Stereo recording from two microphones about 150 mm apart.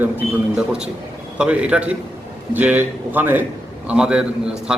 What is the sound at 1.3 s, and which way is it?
A man's voice, 5° right (ahead or behind).